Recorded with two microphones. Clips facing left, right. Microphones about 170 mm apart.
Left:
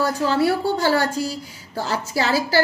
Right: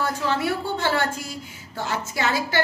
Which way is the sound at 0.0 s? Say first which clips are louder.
Left 5 dB; 35° left (ahead or behind).